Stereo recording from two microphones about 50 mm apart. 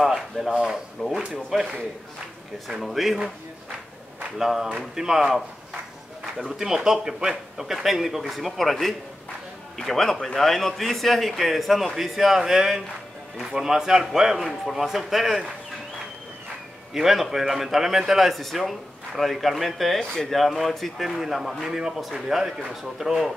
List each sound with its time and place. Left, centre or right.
0.0 s a man's voice: centre
2.7 s a man's voice: centre
4.4 s a man's voice: centre
14.4 s a man's voice: centre
16.9 s a man's voice: centre
20.0 s a man's voice: centre
20.2 s a man's voice: centre